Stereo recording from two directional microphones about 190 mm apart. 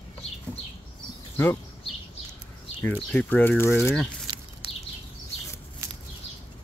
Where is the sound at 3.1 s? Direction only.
10° left (ahead or behind).